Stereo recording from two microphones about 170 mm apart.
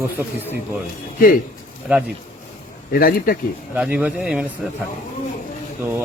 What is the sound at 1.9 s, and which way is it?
Speech, 10° right (ahead or behind).